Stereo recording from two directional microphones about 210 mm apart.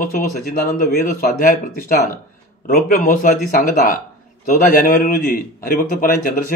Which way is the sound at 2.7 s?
40° left (ahead or behind).